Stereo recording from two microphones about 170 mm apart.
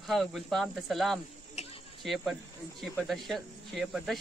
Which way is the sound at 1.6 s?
40° left (ahead or behind).